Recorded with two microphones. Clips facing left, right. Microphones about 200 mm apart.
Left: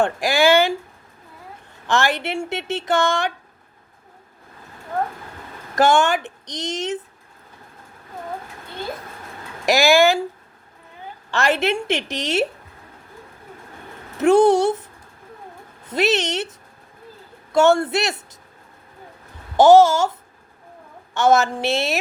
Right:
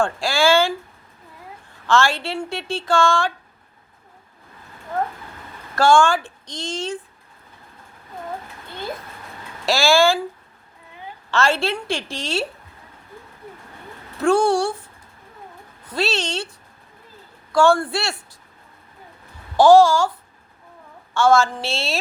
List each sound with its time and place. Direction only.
0.0 s speech: 20° left (ahead or behind)
1.9 s speech: 20° left (ahead or behind)
5.7 s speech: 20° left (ahead or behind)
9.6 s speech: 15° left (ahead or behind)
11.3 s speech: 15° left (ahead or behind)
14.2 s speech: 20° left (ahead or behind)
15.9 s speech: 20° left (ahead or behind)
19.5 s a woman's voice: 20° left (ahead or behind)